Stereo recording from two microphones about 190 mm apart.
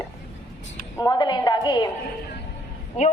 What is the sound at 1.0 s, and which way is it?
Speech, 20° left (ahead or behind).